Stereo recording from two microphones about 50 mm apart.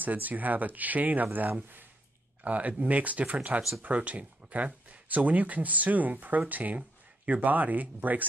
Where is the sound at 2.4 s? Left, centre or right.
Right.